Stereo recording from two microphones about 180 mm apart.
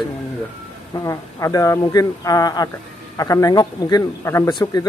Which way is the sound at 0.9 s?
20° left (ahead or behind).